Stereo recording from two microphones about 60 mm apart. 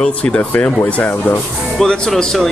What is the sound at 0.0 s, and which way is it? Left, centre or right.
Speech, centre.